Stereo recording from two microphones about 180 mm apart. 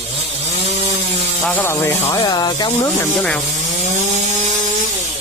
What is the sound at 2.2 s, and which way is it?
Speech, 25° left (ahead or behind).